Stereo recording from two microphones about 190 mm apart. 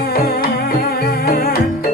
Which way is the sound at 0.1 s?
50° left (ahead or behind).